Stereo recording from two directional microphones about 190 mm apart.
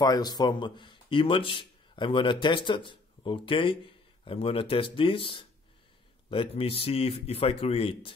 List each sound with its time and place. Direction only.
0.0 s a man's voice: 20° left (ahead or behind)